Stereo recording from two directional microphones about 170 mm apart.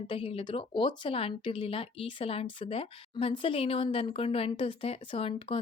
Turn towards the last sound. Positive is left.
turn(degrees=30)  # may be behind; listen again after turning